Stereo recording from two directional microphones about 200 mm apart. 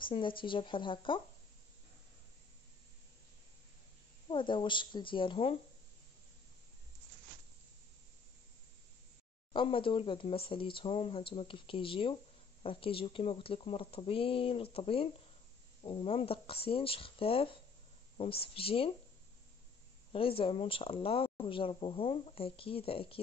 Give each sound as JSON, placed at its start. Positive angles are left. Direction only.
{"t": 0.1, "sound": "speech", "side_deg": 25}
{"t": 4.3, "sound": "speech", "side_deg": 25}
{"t": 9.5, "sound": "speech", "side_deg": 25}
{"t": 20.1, "sound": "speech", "side_deg": 25}